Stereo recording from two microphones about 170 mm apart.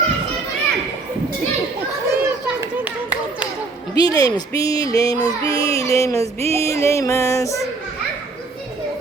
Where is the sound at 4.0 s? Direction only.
20° left (ahead or behind).